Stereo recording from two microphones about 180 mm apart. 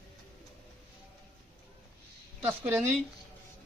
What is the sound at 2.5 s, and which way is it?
Speech, 10° right (ahead or behind).